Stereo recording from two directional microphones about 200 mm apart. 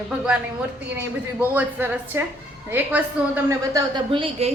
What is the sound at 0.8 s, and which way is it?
A woman's voice, 10° right (ahead or behind).